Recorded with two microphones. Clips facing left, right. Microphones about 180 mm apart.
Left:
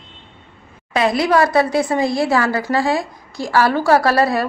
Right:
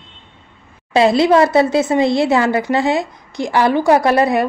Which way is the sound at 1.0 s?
25° right (ahead or behind).